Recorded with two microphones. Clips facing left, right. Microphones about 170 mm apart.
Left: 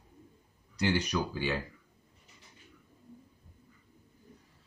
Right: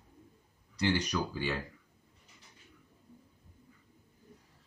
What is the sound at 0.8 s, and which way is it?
Speech, 5° left (ahead or behind).